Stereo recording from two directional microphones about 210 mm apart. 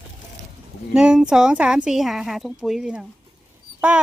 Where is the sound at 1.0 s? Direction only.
5° right (ahead or behind).